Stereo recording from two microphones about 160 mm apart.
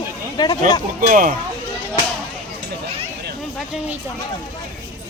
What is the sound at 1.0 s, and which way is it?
Speech, 55° right (ahead or behind).